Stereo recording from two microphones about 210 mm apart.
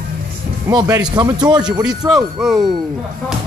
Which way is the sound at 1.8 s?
Centre (ahead or behind).